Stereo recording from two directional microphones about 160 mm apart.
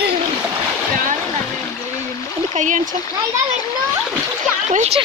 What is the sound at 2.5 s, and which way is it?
Speech, 50° right (ahead or behind).